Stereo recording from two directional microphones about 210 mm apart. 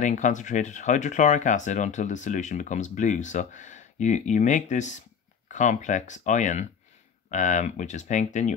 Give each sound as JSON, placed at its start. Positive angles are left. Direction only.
{"t": 0.0, "sound": "speech", "side_deg": 35}